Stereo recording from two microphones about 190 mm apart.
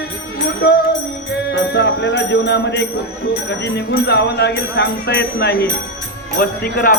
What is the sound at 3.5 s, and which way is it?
Speech, 60° left (ahead or behind).